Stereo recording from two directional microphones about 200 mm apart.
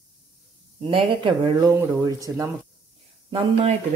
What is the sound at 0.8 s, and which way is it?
Speech, 25° right (ahead or behind).